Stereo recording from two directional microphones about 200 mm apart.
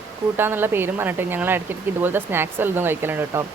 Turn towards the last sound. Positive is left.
turn(degrees=-10)  # may be behind; listen again after turning